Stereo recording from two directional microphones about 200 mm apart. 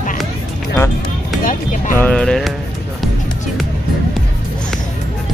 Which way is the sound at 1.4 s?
40° left (ahead or behind).